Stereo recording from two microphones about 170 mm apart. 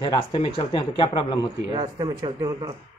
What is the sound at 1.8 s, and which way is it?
Speech, 25° right (ahead or behind).